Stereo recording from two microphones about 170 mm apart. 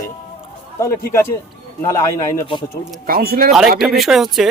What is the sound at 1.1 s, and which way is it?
Speech, 15° left (ahead or behind).